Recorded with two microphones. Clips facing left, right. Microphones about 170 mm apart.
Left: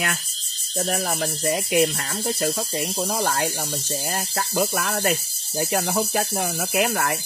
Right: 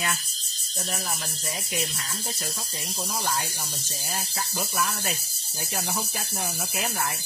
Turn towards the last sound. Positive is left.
turn(degrees=70)  # may be behind; listen again after turning